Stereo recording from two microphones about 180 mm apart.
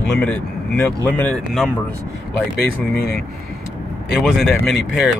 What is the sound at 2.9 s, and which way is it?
Speech, 60° left (ahead or behind).